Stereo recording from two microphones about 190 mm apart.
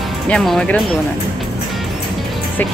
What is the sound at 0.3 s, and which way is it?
Speech, 5° left (ahead or behind).